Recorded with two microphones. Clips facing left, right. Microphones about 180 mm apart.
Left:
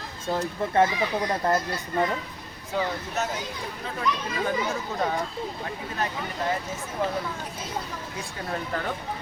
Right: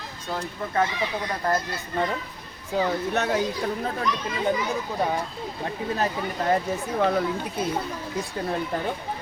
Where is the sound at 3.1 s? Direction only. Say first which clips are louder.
Right 5 dB; 65° right (ahead or behind).